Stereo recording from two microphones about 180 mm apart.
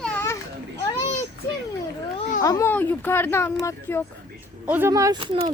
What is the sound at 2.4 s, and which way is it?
Speech, 20° left (ahead or behind).